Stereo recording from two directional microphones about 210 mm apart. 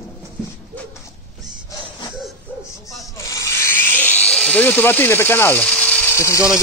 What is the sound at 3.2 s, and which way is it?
Electric toothbrush, 15° left (ahead or behind).